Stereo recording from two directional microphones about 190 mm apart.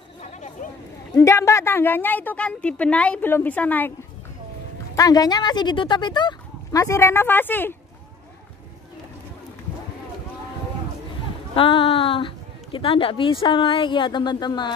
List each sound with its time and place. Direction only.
0.2 s a sound: 40° left (ahead or behind)
1.1 s a woman's voice: 15° left (ahead or behind)
4.9 s a woman's voice: 20° left (ahead or behind)
11.5 s a woman's voice: 30° left (ahead or behind)